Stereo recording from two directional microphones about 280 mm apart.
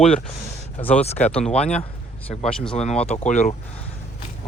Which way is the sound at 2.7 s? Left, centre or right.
Left.